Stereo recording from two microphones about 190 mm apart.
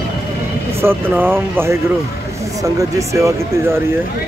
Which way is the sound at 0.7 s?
10° right (ahead or behind).